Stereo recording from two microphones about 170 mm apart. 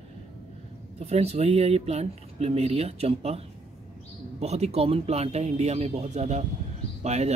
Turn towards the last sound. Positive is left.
turn(degrees=-40)  # may be behind; listen again after turning